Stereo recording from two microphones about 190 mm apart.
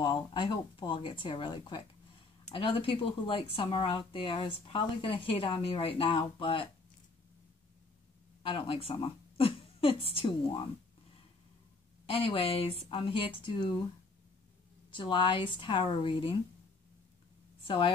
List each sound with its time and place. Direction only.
0.0 s speech: 25° left (ahead or behind)
8.4 s speech: 30° left (ahead or behind)
12.1 s speech: 30° left (ahead or behind)
14.9 s speech: 25° left (ahead or behind)
17.6 s speech: 30° left (ahead or behind)